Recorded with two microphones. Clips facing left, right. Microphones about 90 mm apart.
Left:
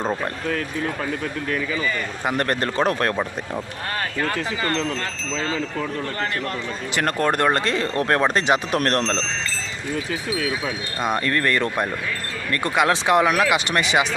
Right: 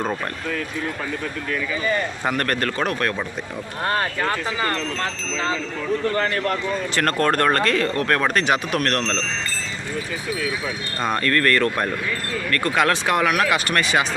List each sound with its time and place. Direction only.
2.3 s speech: 20° left (ahead or behind)
6.9 s speech: 15° left (ahead or behind); by 9.2 s 30° left (ahead or behind)
11.0 s wind chime: 10° left (ahead or behind)
12.5 s speech: 20° left (ahead or behind)